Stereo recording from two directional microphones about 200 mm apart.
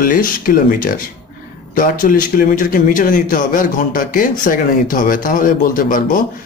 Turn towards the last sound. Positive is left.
turn(degrees=45)  # may be behind; listen again after turning